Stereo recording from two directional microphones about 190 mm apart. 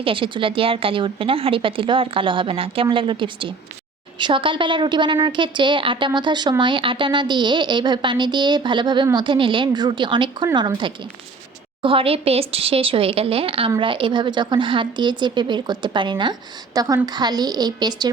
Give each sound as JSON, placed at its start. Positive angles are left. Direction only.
{"t": 0.0, "sound": "a woman's voice", "side_deg": -25}
{"t": 11.8, "sound": "a woman's voice", "side_deg": -30}